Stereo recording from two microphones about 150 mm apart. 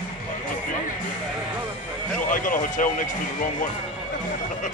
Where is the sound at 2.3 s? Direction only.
65° left (ahead or behind).